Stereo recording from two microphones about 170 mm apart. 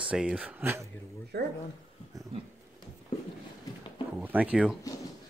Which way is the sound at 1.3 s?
75° right (ahead or behind).